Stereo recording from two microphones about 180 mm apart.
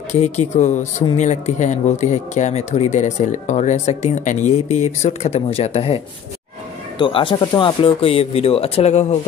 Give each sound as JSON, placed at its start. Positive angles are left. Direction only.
{"t": 0.2, "sound": "speech", "side_deg": 40}
{"t": 7.0, "sound": "speech", "side_deg": 30}